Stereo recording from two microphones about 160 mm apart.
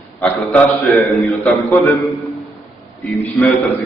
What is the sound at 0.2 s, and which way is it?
Speech, centre (ahead or behind).